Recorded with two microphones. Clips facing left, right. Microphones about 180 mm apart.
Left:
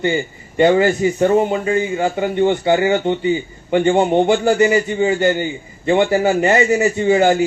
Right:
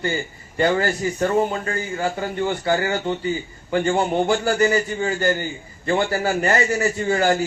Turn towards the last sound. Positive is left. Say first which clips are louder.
# left 6 dB
turn(degrees=20)  # may be behind; listen again after turning